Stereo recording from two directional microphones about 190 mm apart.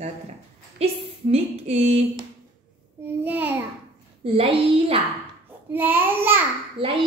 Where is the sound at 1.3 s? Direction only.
30° right (ahead or behind).